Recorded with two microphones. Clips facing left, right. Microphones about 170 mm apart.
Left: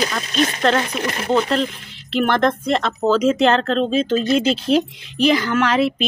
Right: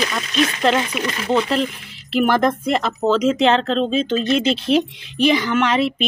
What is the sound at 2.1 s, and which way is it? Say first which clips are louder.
Speech: right 1 dB; 5° right (ahead or behind).